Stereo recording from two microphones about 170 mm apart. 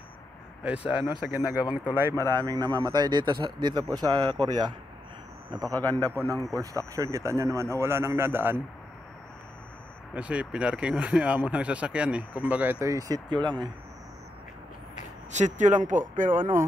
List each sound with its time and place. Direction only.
0.7 s speech: 5° right (ahead or behind)
1.6 s speech: 25° left (ahead or behind)
2.1 s a man's voice: 15° left (ahead or behind)
2.4 s speech: 25° right (ahead or behind)
6.0 s a man's voice: 15° left (ahead or behind)
6.5 s speech: 20° right (ahead or behind)
10.1 s speech: 5° right (ahead or behind)
12.8 s speech: 20° right (ahead or behind)
15.3 s speech: 45° right (ahead or behind)
16.3 s speech: 10° right (ahead or behind)